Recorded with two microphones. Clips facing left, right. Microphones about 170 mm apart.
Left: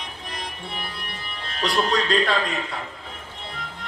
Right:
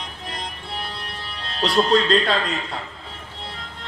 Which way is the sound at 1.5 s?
25° right (ahead or behind).